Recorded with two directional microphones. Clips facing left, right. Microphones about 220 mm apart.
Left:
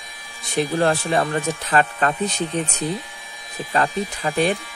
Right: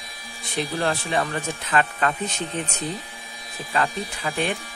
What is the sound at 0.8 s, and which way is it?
Speech, 40° left (ahead or behind).